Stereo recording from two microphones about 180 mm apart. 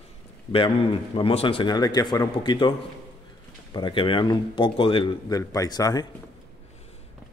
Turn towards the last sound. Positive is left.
turn(degrees=20)  # may be behind; listen again after turning